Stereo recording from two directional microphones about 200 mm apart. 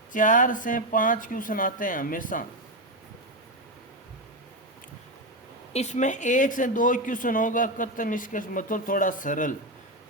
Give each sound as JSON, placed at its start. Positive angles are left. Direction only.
{"t": 0.1, "sound": "speech", "side_deg": 40}
{"t": 5.7, "sound": "speech", "side_deg": 35}